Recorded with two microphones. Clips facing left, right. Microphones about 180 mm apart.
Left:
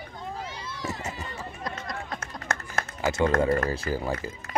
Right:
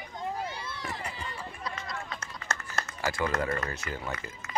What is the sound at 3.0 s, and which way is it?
Speech, 25° left (ahead or behind).